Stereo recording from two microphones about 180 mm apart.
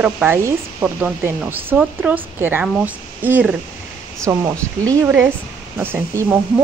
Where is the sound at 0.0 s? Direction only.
10° right (ahead or behind).